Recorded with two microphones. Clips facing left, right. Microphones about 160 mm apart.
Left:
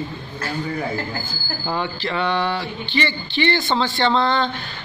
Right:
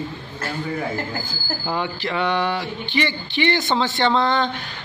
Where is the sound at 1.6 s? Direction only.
15° right (ahead or behind).